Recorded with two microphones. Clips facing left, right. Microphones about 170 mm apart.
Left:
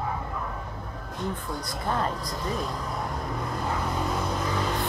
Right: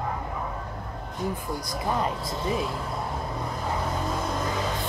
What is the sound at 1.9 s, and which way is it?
Speech, 5° right (ahead or behind).